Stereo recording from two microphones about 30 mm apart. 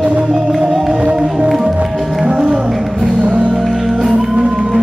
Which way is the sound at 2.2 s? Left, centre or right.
Right.